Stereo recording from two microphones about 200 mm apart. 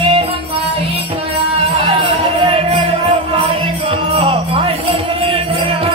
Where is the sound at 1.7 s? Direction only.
30° right (ahead or behind).